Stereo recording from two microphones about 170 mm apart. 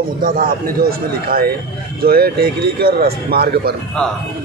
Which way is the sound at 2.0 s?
65° right (ahead or behind).